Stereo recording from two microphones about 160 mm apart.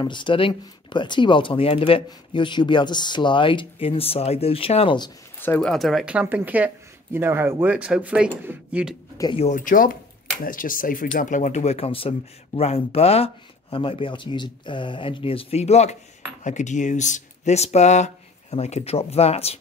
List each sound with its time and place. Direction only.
0.0 s speech: 30° left (ahead or behind)
5.4 s speech: 10° left (ahead or behind); by 8.9 s 10° right (ahead or behind)
9.4 s speech: 50° left (ahead or behind)